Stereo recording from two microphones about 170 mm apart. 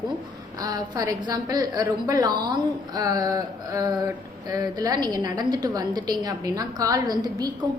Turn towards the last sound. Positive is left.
turn(degrees=-25)  # may be behind; listen again after turning